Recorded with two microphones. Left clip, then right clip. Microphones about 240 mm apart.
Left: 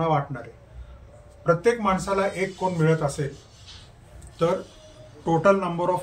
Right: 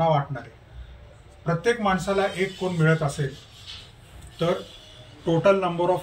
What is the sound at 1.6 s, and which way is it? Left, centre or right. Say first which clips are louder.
Speech: left 1 dB; centre.